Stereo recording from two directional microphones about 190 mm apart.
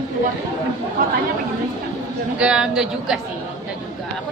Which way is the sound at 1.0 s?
50° right (ahead or behind).